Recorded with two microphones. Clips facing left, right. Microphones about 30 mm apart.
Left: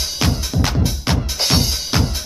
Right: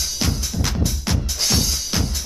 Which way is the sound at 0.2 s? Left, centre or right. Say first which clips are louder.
Left 6 dB; left.